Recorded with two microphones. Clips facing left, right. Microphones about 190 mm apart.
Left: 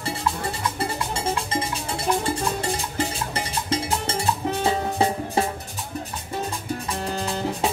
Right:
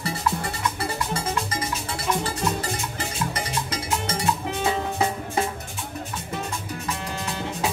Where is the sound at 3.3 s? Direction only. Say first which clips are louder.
Left 2 dB; 30° left (ahead or behind).